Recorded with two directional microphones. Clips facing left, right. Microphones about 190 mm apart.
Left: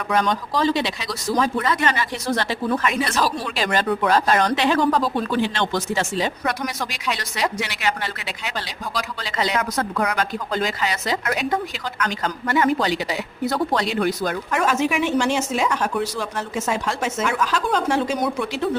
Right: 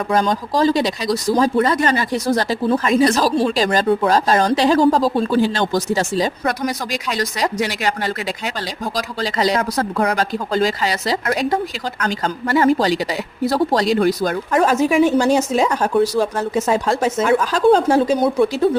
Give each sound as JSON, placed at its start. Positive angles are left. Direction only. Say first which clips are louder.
{"t": 0.1, "sound": "speech", "louder": "right 2 dB", "side_deg": -35}